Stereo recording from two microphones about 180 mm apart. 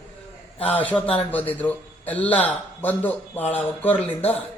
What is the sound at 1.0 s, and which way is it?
Speech, 30° left (ahead or behind).